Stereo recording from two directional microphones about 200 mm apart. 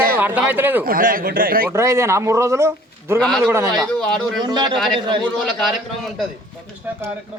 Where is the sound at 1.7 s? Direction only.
15° right (ahead or behind).